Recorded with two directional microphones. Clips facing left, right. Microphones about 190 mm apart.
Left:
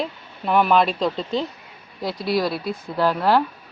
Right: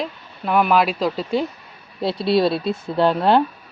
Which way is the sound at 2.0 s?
25° right (ahead or behind).